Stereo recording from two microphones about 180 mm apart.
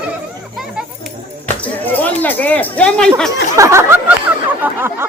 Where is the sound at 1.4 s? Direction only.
10° left (ahead or behind).